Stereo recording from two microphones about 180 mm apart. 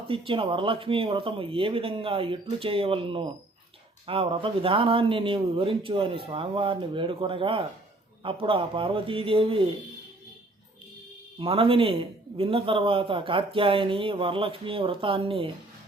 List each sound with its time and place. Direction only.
0.1 s speech: 30° right (ahead or behind)
11.3 s a man's voice: 30° right (ahead or behind)